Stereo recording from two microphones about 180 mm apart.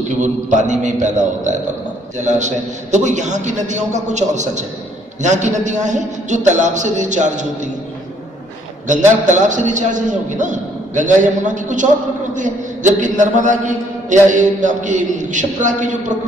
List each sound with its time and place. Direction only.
0.2 s a man's voice: 40° right (ahead or behind)
9.3 s a man's voice: 45° right (ahead or behind)